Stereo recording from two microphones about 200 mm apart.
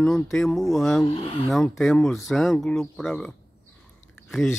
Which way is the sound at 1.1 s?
30° left (ahead or behind).